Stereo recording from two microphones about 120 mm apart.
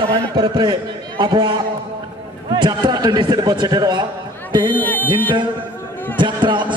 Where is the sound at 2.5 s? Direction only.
40° right (ahead or behind).